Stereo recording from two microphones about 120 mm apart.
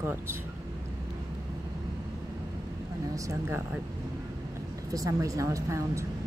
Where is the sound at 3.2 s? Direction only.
25° right (ahead or behind).